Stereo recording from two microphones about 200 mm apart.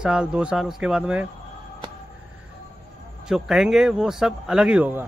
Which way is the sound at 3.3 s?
Centre (ahead or behind).